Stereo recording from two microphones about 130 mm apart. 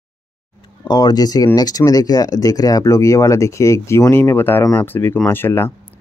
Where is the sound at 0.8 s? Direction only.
30° left (ahead or behind).